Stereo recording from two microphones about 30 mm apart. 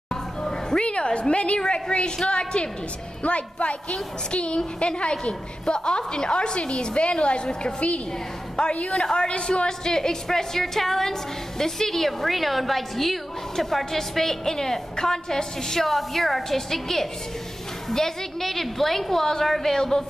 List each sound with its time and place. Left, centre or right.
0.1 s a sound: left
0.7 s a sound: left
1.3 s a woman's voice: left
8.7 s a woman's voice: left
9.0 s a man's voice: left
9.3 s a woman's voice: left
9.7 s a woman's voice: centre
15.8 s a woman's voice: centre